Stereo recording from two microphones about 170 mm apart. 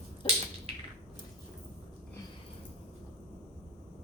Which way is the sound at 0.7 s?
35° right (ahead or behind).